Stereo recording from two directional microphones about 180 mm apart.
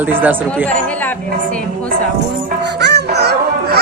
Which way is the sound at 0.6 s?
10° left (ahead or behind).